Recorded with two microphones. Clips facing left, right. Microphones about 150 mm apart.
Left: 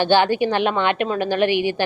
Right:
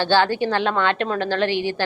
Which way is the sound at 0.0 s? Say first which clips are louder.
Left 2 dB; 15° left (ahead or behind).